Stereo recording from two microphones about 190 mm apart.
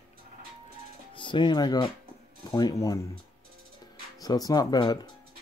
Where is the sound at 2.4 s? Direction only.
20° left (ahead or behind).